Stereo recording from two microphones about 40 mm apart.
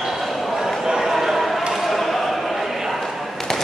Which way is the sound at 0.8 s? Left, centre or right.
Centre.